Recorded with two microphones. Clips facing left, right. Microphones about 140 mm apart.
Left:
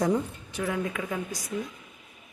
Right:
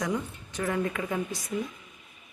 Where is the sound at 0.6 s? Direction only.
5° left (ahead or behind).